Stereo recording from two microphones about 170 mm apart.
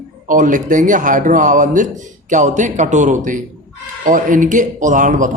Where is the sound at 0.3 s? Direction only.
50° right (ahead or behind).